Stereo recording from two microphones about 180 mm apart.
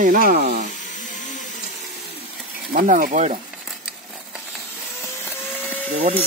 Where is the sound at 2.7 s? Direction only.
50° right (ahead or behind).